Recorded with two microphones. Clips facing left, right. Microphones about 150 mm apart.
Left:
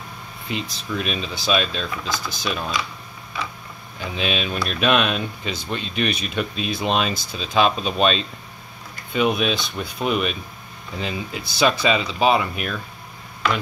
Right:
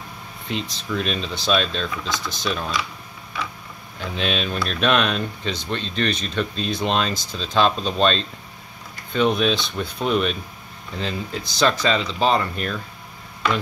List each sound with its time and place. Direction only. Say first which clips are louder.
0.5 s speech: right 1 dB; 5° left (ahead or behind)
4.0 s speech: even; 5° left (ahead or behind)